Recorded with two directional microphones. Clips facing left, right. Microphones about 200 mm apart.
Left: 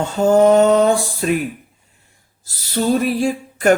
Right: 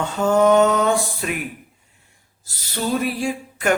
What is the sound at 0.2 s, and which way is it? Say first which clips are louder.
Speech: left 3 dB; 30° left (ahead or behind).